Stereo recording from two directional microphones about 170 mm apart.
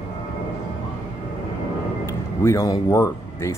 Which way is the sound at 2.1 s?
15° left (ahead or behind).